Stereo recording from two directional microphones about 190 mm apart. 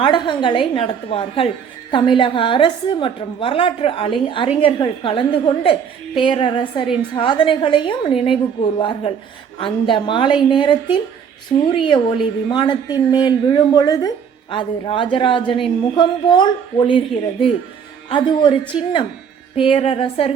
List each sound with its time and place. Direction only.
0.0 s a woman's voice: 25° left (ahead or behind)
18.1 s a woman's voice: 25° left (ahead or behind)
19.5 s a woman's voice: 30° left (ahead or behind)